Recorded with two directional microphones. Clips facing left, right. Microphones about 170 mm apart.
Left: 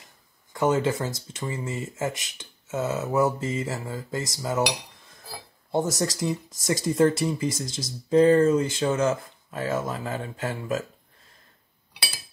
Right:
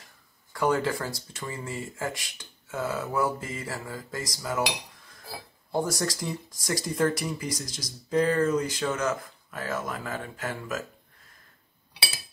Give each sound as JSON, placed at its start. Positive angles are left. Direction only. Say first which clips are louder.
{"t": 0.5, "sound": "speech", "louder": "left 3 dB", "side_deg": 20}
{"t": 5.7, "sound": "speech", "louder": "left 3 dB", "side_deg": 20}